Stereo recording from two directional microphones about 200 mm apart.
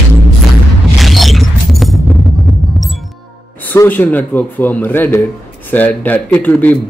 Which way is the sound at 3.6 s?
10° left (ahead or behind).